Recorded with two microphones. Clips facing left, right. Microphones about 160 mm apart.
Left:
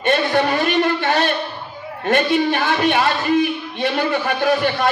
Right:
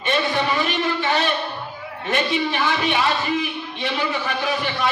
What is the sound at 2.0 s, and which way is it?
A man's voice, 55° left (ahead or behind).